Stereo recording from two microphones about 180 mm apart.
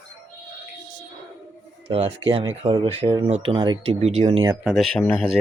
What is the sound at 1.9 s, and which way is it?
Speech, 30° right (ahead or behind).